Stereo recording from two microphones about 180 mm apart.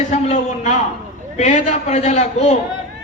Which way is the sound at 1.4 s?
40° left (ahead or behind).